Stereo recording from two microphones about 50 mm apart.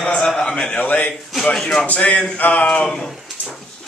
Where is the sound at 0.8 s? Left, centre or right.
Left.